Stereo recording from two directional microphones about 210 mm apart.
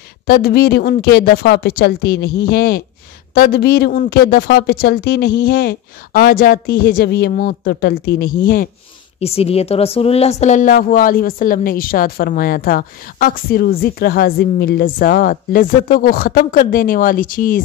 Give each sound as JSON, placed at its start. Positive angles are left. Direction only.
{"t": 0.3, "sound": "speech", "side_deg": 45}
{"t": 9.2, "sound": "speech", "side_deg": 30}